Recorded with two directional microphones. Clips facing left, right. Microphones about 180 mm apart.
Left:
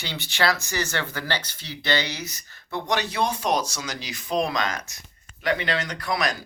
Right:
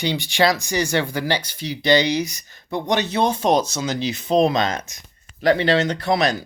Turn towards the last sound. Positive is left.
turn(degrees=-25)  # may be behind; listen again after turning